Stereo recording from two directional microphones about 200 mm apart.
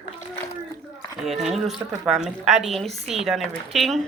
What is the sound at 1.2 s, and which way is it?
A woman's voice, centre (ahead or behind).